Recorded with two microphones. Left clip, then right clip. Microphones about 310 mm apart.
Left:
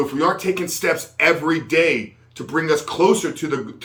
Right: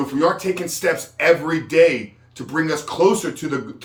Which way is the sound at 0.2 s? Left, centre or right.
Centre.